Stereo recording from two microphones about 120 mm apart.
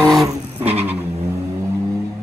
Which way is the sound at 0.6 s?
60° right (ahead or behind).